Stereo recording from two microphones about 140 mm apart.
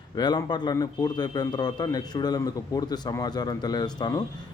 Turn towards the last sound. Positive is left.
turn(degrees=30)  # may be behind; listen again after turning